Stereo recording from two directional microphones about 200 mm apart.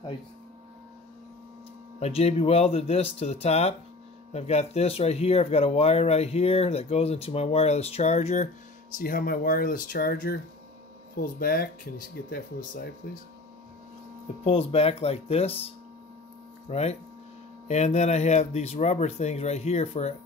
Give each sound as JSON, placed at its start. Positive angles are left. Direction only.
{"t": 2.0, "sound": "speech", "side_deg": 30}
{"t": 14.4, "sound": "speech", "side_deg": 30}